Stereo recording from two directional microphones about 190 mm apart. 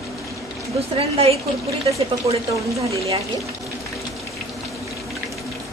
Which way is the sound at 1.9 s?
15° right (ahead or behind).